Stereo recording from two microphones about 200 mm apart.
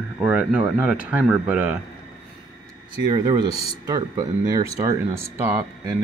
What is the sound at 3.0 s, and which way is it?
Speech, 20° right (ahead or behind).